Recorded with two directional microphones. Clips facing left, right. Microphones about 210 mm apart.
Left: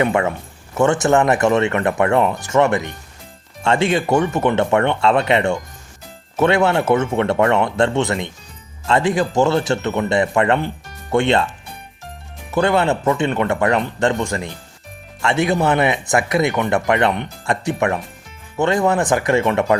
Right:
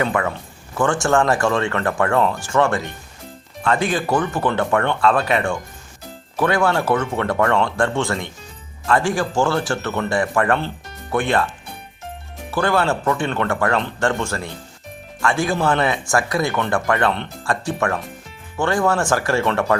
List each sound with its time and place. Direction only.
0.0 s speech: 25° left (ahead or behind)
12.5 s speech: 20° left (ahead or behind)